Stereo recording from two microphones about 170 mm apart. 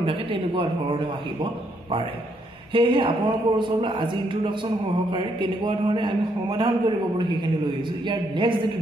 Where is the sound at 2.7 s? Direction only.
30° right (ahead or behind).